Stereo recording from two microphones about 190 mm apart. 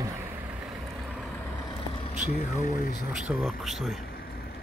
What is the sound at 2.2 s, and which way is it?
Speech, 45° left (ahead or behind).